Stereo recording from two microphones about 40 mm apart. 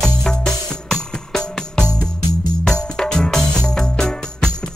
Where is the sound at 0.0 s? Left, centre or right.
Centre.